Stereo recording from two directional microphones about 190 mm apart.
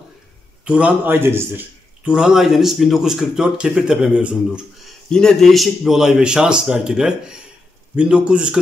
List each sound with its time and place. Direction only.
0.7 s a man's voice: 5° right (ahead or behind)